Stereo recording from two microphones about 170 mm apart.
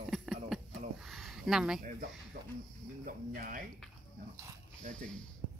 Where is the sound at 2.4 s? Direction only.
70° right (ahead or behind).